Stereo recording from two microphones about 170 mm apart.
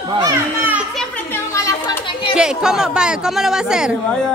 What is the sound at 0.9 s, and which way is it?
Chatter, 10° left (ahead or behind).